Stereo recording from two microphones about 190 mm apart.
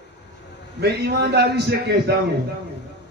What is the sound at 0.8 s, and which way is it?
A man's voice, 60° right (ahead or behind).